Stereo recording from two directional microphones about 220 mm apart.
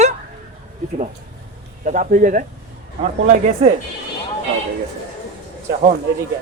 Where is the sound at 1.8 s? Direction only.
35° right (ahead or behind).